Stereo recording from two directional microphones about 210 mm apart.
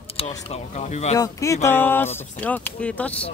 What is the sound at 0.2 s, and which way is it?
Speech, 30° left (ahead or behind).